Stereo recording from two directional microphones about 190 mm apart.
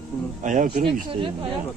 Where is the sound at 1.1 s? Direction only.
25° right (ahead or behind).